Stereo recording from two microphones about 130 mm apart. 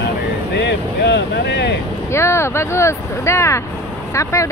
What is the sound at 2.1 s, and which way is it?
Speech, 20° left (ahead or behind).